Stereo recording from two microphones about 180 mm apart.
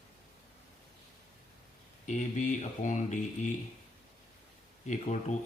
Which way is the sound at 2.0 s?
40° left (ahead or behind).